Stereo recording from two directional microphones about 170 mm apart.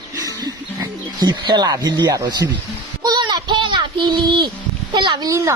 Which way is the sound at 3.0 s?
25° right (ahead or behind).